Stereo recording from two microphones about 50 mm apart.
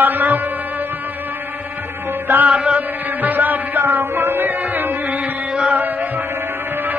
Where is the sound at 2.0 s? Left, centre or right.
Right.